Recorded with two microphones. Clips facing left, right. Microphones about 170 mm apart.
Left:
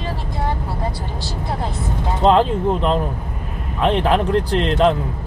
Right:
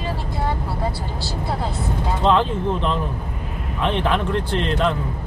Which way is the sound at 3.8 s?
40° left (ahead or behind).